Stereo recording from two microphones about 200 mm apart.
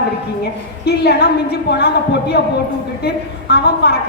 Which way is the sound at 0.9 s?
55° left (ahead or behind).